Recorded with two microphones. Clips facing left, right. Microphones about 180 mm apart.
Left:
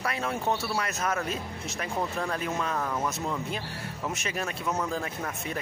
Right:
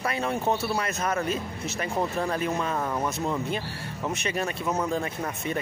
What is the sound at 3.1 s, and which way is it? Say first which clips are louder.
Speech: right 4 dB; centre (ahead or behind).